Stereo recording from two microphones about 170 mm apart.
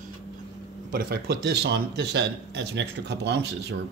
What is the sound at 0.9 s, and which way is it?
Speech, 60° right (ahead or behind).